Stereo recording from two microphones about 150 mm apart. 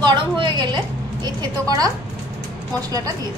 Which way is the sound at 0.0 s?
30° right (ahead or behind).